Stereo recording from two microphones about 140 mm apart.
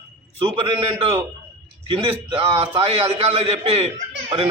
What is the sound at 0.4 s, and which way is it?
A man's voice, 40° right (ahead or behind).